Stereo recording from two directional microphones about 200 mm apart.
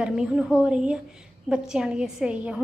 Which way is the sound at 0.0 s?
5° right (ahead or behind).